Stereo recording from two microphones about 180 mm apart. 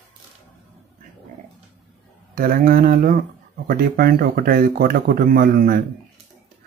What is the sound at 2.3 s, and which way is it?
Speech, 50° right (ahead or behind).